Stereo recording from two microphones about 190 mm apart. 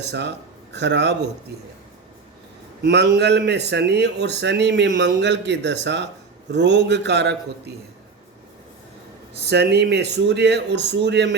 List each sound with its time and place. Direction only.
0.1 s speech: 65° right (ahead or behind)
2.8 s a man's voice: 60° right (ahead or behind)
9.4 s speech: 60° right (ahead or behind)